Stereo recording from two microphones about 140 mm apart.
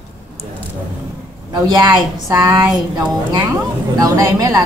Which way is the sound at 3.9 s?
25° right (ahead or behind).